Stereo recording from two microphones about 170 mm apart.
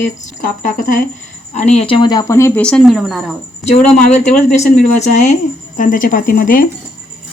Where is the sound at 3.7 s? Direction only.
40° left (ahead or behind).